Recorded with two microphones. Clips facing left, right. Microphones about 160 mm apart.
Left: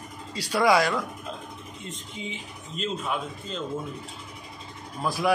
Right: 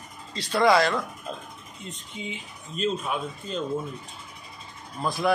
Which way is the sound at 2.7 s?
20° left (ahead or behind).